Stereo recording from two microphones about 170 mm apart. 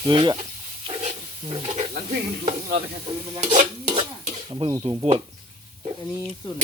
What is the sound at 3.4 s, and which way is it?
Stir, 40° right (ahead or behind).